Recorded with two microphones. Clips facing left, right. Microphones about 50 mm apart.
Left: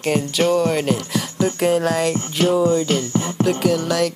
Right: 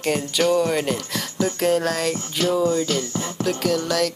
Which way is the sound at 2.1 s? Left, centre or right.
Left.